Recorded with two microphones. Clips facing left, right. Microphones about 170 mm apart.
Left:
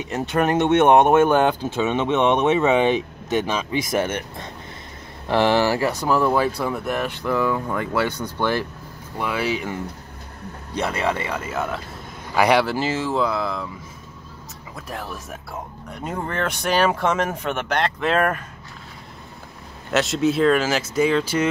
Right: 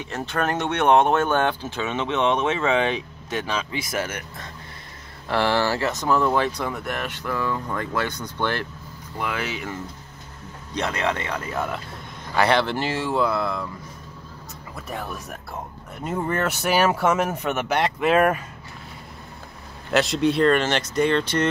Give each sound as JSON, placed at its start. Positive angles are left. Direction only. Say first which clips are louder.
{"t": 0.0, "sound": "speech", "louder": "left 4 dB", "side_deg": 15}
{"t": 14.9, "sound": "speech", "louder": "even", "side_deg": 0}
{"t": 19.9, "sound": "speech", "louder": "even", "side_deg": 0}